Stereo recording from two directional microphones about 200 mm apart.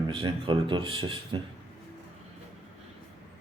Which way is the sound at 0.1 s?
25° right (ahead or behind).